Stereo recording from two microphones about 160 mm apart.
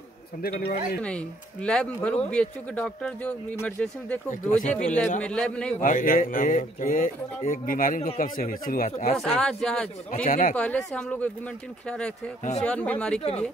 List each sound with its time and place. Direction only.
0.4 s a man's voice: 75° left (ahead or behind)
1.0 s speech: 5° left (ahead or behind)
4.3 s speech: 50° left (ahead or behind)
4.7 s speech: 10° left (ahead or behind)
5.8 s speech: 60° left (ahead or behind)
9.1 s speech: 5° left (ahead or behind)
10.1 s speech: 60° left (ahead or behind)
10.5 s speech: 5° left (ahead or behind)
12.6 s speech: 10° left (ahead or behind)